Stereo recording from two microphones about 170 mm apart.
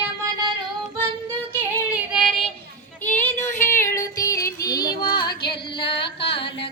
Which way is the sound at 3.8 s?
15° left (ahead or behind).